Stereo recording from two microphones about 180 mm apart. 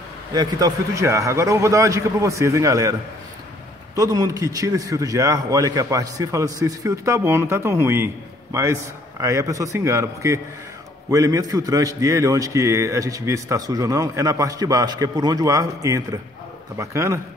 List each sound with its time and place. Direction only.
0.3 s a man's voice: 20° right (ahead or behind)